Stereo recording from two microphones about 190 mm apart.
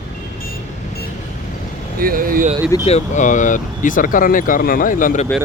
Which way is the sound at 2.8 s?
35° left (ahead or behind).